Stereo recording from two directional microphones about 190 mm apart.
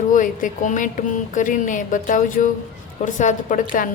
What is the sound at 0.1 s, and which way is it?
A woman's voice, 45° left (ahead or behind).